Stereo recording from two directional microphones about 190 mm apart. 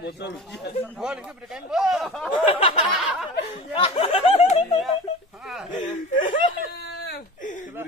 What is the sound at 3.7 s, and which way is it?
Speech, 30° left (ahead or behind).